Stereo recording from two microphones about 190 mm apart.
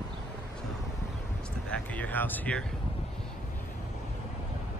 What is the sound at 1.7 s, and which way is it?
Speech, 10° left (ahead or behind).